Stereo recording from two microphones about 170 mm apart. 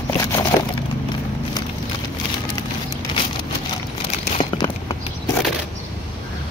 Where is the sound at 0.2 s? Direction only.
20° left (ahead or behind).